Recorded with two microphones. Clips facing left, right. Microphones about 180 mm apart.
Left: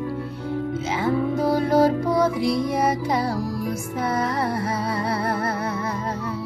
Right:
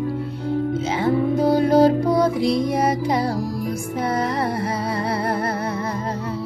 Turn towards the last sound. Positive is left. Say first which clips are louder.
# right 2 dB
turn(degrees=-15)  # may be behind; listen again after turning